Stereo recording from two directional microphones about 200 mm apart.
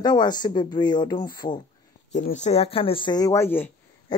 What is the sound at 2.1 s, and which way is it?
Speech, 35° left (ahead or behind).